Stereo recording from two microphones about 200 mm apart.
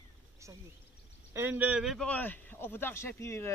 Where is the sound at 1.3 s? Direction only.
10° right (ahead or behind).